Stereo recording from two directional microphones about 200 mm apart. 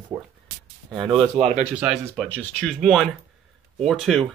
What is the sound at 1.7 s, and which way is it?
Speech, 5° right (ahead or behind).